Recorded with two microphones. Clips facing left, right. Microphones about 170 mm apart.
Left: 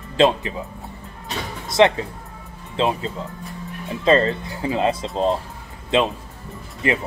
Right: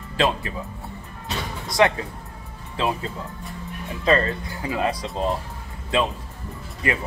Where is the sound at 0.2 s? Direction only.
25° left (ahead or behind).